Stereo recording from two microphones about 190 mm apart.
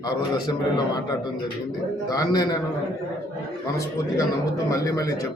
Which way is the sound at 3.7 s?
15° left (ahead or behind).